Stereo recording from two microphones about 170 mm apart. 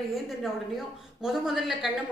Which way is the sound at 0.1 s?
Centre (ahead or behind).